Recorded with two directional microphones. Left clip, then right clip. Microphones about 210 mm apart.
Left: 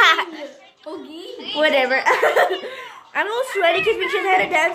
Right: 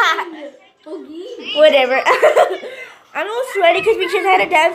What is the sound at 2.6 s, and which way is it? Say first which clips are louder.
A woman's voice: right 1 dB; 10° left (ahead or behind).